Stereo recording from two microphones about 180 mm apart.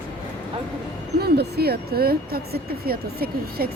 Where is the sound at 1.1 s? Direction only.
60° right (ahead or behind).